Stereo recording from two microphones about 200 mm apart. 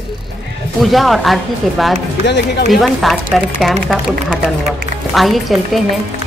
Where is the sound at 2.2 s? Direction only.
60° left (ahead or behind).